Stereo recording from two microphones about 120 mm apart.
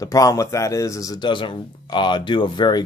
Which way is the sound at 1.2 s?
45° left (ahead or behind).